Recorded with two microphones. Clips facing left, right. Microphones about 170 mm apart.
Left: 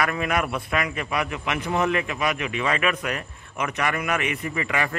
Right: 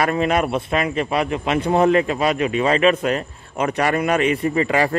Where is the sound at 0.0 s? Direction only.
30° right (ahead or behind).